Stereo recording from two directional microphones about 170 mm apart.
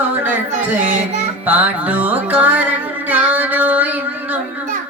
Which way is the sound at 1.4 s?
10° right (ahead or behind).